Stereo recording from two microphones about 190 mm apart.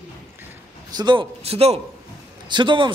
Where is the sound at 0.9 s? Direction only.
25° right (ahead or behind).